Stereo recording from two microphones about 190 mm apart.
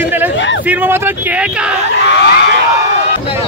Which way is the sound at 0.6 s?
10° right (ahead or behind).